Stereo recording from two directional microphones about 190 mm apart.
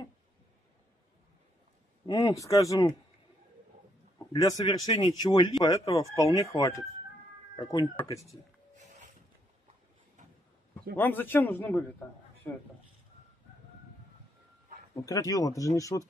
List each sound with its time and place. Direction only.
2.0 s speech: 20° left (ahead or behind)
4.2 s speech: 20° left (ahead or behind)
7.9 s speech: 10° left (ahead or behind)
11.0 s speech: 10° left (ahead or behind)
15.0 s speech: 20° left (ahead or behind)